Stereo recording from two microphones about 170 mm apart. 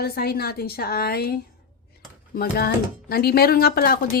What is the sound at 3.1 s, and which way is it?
Speech, 65° left (ahead or behind).